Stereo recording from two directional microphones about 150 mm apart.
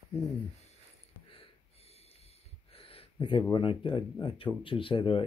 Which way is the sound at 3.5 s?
35° left (ahead or behind).